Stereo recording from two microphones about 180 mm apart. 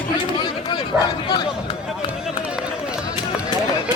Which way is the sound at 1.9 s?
5° right (ahead or behind).